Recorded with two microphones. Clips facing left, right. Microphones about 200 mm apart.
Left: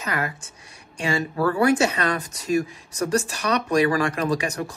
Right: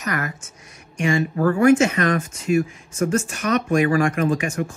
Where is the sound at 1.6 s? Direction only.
35° left (ahead or behind).